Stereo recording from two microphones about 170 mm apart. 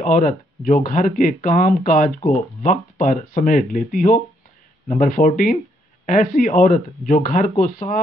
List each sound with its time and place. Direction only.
0.0 s speech: 50° left (ahead or behind)